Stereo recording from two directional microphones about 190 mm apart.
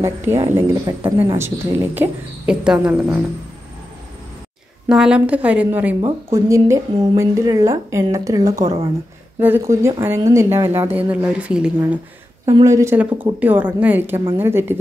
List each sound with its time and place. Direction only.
0.0 s a woman's voice: 15° right (ahead or behind)
2.0 s speech: 5° right (ahead or behind)
4.8 s a woman's voice: 5° right (ahead or behind)
8.6 s speech: 30° right (ahead or behind)
9.4 s a woman's voice: 10° right (ahead or behind)